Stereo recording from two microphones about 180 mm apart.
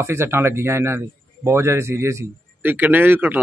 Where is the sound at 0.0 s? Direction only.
15° right (ahead or behind).